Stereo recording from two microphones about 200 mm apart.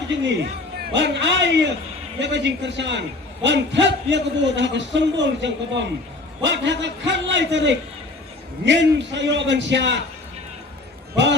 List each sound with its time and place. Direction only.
0.3 s a man's voice: 60° right (ahead or behind)